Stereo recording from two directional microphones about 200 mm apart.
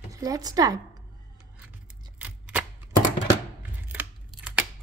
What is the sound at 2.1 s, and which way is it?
Chopping, 5° right (ahead or behind).